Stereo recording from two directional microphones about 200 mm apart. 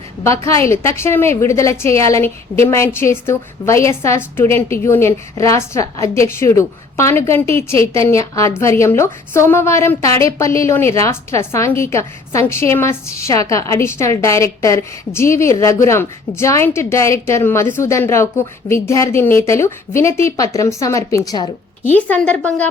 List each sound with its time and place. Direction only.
0.7 s a woman's voice: 15° left (ahead or behind)
21.9 s a woman's voice: 5° left (ahead or behind)